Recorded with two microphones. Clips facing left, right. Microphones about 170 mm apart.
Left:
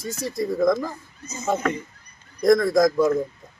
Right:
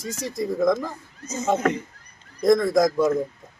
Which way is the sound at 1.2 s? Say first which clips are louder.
Right 3 dB; 90° right.